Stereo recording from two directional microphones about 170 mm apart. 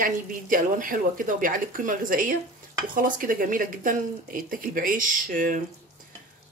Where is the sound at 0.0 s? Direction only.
55° right (ahead or behind).